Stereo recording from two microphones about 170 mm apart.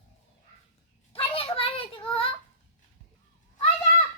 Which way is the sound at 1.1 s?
35° left (ahead or behind).